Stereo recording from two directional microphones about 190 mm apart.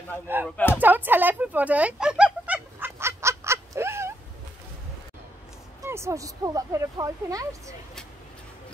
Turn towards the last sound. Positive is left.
turn(degrees=-15)  # may be behind; listen again after turning